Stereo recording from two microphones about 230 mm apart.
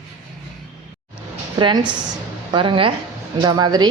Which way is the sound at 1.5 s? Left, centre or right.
Centre.